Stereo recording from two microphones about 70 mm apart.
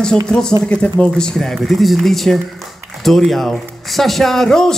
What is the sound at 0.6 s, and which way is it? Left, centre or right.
Speech, centre.